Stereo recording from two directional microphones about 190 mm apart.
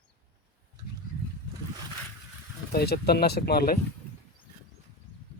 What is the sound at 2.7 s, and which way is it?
Speech, 55° left (ahead or behind).